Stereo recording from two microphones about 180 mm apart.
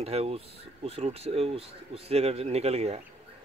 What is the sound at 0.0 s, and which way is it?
Speech, 35° right (ahead or behind).